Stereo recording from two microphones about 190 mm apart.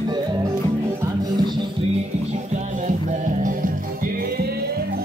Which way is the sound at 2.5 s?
40° right (ahead or behind).